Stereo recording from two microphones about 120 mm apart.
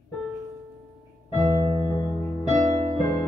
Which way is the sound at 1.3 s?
25° right (ahead or behind).